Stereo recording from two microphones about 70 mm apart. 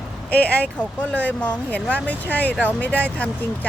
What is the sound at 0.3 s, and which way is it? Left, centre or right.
Speech, left.